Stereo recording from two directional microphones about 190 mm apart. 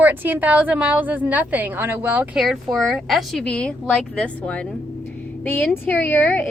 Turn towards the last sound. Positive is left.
turn(degrees=10)  # may be behind; listen again after turning